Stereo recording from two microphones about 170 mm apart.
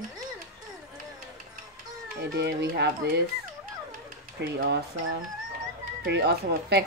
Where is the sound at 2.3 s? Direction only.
75° right (ahead or behind).